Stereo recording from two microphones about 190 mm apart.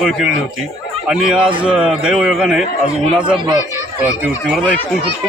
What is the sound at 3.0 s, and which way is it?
Speech, 30° right (ahead or behind).